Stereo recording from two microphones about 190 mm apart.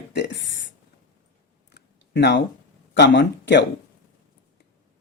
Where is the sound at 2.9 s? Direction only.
70° left (ahead or behind).